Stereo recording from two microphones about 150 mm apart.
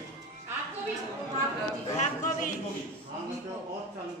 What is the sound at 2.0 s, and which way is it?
Music, 55° left (ahead or behind).